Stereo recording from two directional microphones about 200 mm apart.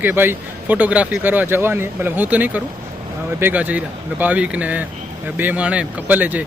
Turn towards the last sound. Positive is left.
turn(degrees=-10)  # may be behind; listen again after turning